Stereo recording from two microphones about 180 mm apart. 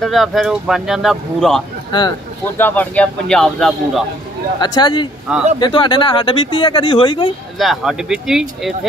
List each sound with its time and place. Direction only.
0.0 s speech: centre (ahead or behind)
1.9 s speech: 25° left (ahead or behind)
2.5 s speech: 10° left (ahead or behind)
4.6 s speech: 25° left (ahead or behind)
7.5 s speech: centre (ahead or behind)